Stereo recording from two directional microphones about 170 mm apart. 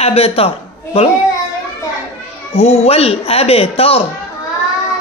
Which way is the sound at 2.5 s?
40° left (ahead or behind).